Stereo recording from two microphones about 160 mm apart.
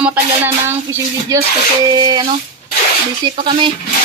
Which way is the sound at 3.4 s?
30° right (ahead or behind).